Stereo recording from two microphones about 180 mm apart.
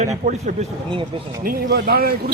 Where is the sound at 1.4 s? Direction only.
60° right (ahead or behind).